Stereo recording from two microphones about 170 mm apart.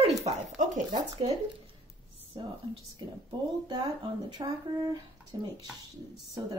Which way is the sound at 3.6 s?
25° right (ahead or behind).